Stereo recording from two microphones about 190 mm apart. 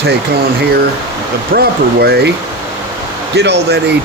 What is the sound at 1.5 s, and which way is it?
Speech, 55° right (ahead or behind).